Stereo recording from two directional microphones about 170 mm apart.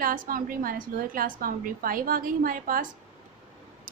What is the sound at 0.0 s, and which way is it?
A woman's voice, 55° right (ahead or behind).